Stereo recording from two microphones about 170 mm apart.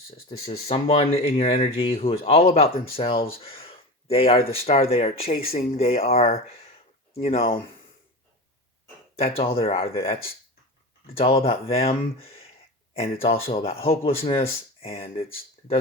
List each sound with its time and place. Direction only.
0.7 s speech: 35° left (ahead or behind)
3.4 s a sound: 35° left (ahead or behind)
4.5 s speech: 35° left (ahead or behind)
9.1 s speech: 35° left (ahead or behind)